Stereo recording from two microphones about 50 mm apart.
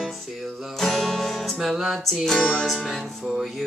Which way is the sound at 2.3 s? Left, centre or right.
Centre.